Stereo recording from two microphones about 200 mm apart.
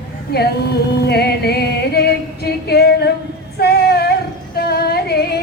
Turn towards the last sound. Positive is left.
turn(degrees=55)  # may be behind; listen again after turning